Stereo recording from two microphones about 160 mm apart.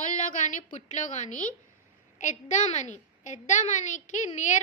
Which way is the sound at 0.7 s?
45° left (ahead or behind).